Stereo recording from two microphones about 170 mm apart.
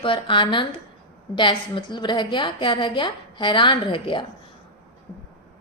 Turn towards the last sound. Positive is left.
turn(degrees=30)  # may be behind; listen again after turning